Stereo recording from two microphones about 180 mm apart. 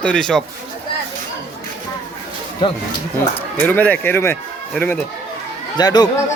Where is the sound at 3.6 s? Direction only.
10° left (ahead or behind).